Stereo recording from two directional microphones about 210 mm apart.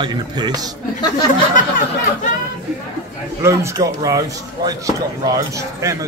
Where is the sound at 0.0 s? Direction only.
20° right (ahead or behind).